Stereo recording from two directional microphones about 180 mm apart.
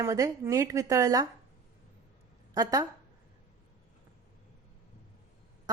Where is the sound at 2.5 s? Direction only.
20° right (ahead or behind).